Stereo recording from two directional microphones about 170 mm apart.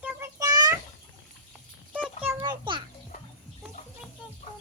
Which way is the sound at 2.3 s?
25° right (ahead or behind).